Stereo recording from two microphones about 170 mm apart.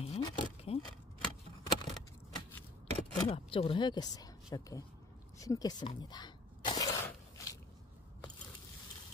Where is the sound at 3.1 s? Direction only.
30° left (ahead or behind).